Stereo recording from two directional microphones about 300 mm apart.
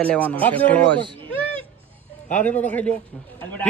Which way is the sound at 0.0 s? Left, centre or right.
Centre.